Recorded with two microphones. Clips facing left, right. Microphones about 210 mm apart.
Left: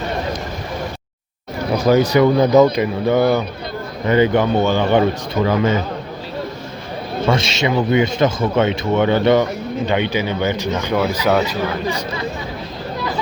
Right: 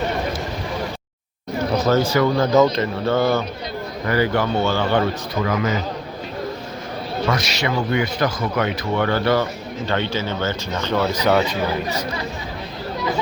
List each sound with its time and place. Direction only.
1.8 s speech: 15° left (ahead or behind)
7.3 s speech: 25° left (ahead or behind); by 11.4 s 5° left (ahead or behind)